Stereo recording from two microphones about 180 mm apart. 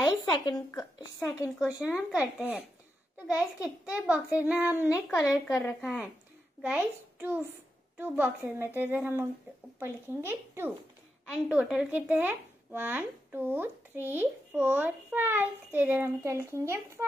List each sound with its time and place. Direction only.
0.0 s a woman's voice: 25° left (ahead or behind)
2.1 s a child's voice: 10° right (ahead or behind)
5.1 s a woman's voice: 20° left (ahead or behind)
6.6 s speech: 10° right (ahead or behind)